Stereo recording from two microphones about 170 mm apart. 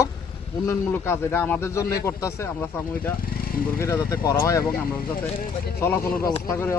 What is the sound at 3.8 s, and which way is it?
Speech, 15° left (ahead or behind).